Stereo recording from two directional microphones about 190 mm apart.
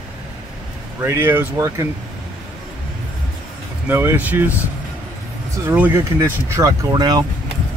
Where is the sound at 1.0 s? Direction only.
10° right (ahead or behind).